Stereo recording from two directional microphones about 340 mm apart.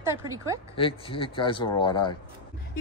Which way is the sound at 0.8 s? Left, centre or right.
Centre.